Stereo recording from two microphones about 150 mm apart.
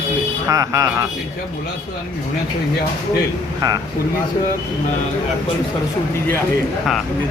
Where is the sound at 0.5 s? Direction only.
20° right (ahead or behind).